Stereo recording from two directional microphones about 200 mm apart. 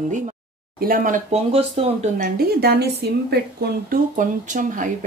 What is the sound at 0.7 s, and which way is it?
Speech, 45° right (ahead or behind).